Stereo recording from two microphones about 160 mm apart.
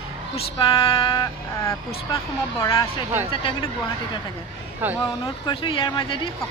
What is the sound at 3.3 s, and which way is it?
Speech, 35° left (ahead or behind).